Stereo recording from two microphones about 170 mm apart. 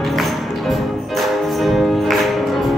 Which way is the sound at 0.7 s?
Centre (ahead or behind).